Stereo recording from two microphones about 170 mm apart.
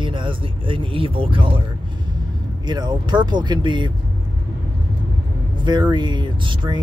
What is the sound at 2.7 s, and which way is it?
Speech, 25° right (ahead or behind).